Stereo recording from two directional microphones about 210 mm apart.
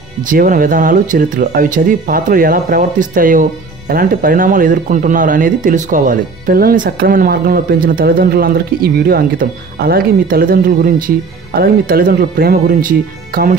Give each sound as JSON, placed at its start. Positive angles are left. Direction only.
{"t": 0.3, "sound": "speech", "side_deg": -40}